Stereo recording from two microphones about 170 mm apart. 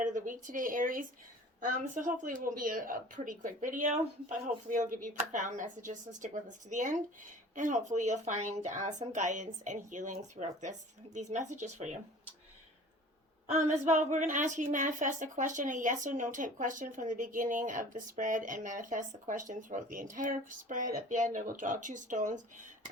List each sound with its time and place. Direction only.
0.0 s a woman's voice: 50° right (ahead or behind)
13.5 s a woman's voice: 45° right (ahead or behind)